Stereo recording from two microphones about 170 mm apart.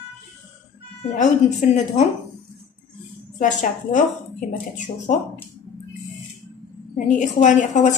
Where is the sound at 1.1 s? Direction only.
50° left (ahead or behind).